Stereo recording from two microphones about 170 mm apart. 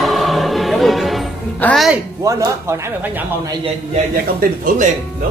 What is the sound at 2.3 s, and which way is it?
Speech, 20° right (ahead or behind).